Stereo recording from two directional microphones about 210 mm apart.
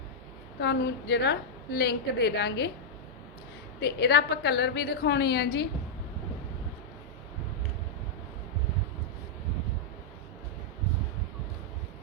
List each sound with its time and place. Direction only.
0.6 s a woman's voice: 55° left (ahead or behind)
3.8 s a woman's voice: 50° left (ahead or behind)